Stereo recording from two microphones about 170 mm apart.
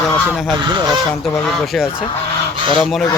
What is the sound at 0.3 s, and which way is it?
Speech, centre (ahead or behind).